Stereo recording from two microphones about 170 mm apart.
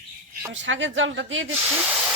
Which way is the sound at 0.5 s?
90° right.